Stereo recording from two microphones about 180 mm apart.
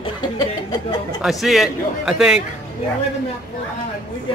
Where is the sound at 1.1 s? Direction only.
Centre (ahead or behind).